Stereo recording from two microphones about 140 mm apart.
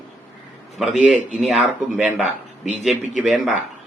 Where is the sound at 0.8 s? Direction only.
5° right (ahead or behind).